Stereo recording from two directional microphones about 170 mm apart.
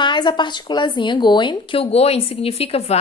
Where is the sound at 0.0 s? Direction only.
25° left (ahead or behind).